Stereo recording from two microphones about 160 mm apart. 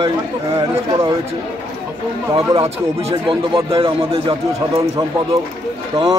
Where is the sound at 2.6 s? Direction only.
35° right (ahead or behind).